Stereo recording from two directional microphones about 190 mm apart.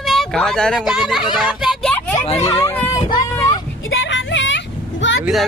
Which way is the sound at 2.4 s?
10° left (ahead or behind).